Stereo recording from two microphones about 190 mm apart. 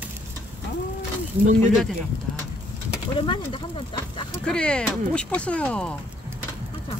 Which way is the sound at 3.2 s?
25° left (ahead or behind).